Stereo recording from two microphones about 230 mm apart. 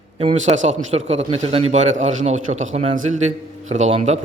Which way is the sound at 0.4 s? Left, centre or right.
Right.